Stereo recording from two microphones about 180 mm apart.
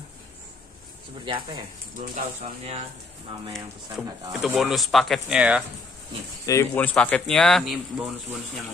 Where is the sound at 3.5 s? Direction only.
Centre (ahead or behind).